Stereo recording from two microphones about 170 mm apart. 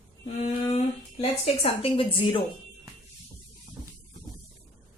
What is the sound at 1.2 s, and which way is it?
A woman's voice, 35° left (ahead or behind).